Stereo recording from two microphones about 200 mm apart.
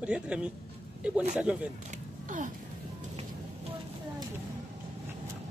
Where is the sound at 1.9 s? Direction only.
40° right (ahead or behind).